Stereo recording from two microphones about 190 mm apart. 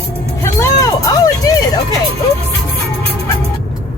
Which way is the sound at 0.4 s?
15° left (ahead or behind).